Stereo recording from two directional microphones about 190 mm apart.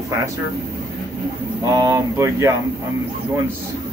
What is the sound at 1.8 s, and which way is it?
Speech, 15° right (ahead or behind).